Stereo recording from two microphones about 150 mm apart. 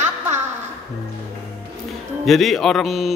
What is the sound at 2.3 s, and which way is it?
Speech, centre (ahead or behind).